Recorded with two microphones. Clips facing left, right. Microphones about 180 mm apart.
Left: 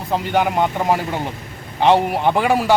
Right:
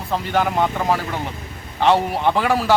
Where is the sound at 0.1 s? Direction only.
15° left (ahead or behind).